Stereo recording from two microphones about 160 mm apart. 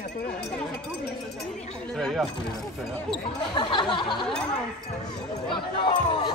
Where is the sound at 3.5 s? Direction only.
30° left (ahead or behind).